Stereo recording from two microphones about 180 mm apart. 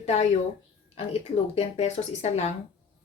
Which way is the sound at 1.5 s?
40° left (ahead or behind).